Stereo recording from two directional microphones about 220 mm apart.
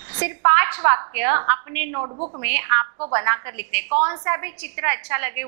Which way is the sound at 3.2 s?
15° right (ahead or behind).